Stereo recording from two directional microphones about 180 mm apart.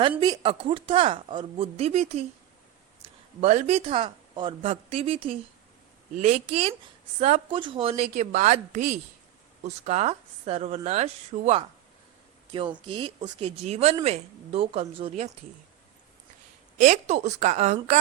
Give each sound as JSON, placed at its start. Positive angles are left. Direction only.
{"t": 0.2, "sound": "a woman's voice", "side_deg": -25}
{"t": 16.7, "sound": "a woman's voice", "side_deg": -40}